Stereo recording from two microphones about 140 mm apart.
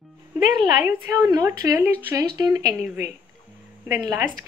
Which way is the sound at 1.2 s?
25° right (ahead or behind).